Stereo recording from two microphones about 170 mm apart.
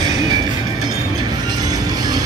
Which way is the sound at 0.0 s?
25° right (ahead or behind).